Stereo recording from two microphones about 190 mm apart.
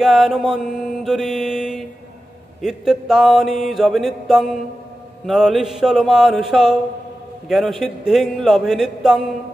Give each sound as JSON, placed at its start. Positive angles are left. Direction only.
{"t": 0.0, "sound": "mantra", "side_deg": 0}